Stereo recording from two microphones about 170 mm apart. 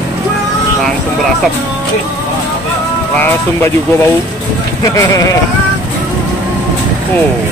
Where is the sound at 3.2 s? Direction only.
15° left (ahead or behind).